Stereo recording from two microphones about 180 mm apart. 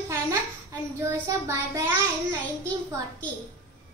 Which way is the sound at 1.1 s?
15° right (ahead or behind).